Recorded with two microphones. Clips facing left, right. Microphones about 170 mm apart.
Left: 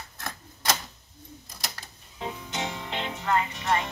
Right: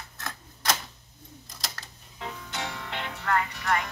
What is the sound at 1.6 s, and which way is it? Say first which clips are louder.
Music: even; 15° left (ahead or behind).